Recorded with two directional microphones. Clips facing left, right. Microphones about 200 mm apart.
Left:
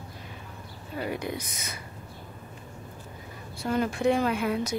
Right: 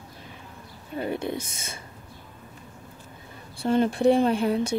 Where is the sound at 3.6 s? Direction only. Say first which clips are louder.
Right 5 dB; 30° right (ahead or behind).